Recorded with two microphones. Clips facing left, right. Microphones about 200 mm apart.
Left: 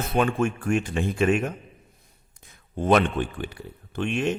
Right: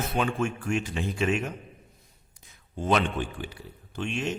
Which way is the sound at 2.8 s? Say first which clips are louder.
Left 5 dB; 55° left (ahead or behind).